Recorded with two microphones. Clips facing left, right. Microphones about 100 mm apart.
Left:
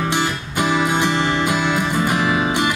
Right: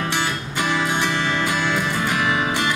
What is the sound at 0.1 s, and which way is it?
Music, 15° left (ahead or behind).